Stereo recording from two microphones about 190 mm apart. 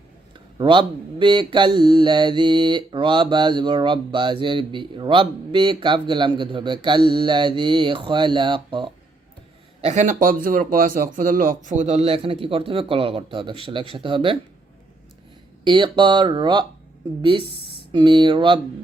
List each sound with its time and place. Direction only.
0.6 s speech: 25° right (ahead or behind)
9.8 s speech: 40° right (ahead or behind)
15.6 s speech: 25° right (ahead or behind)
17.9 s speech: 25° right (ahead or behind)